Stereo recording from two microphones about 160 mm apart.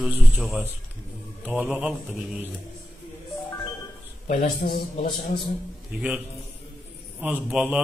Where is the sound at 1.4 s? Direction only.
10° right (ahead or behind).